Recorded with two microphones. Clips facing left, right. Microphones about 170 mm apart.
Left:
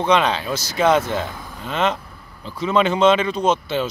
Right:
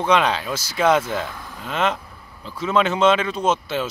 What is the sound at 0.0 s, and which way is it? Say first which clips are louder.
Speech: left 1 dB; 5° right (ahead or behind).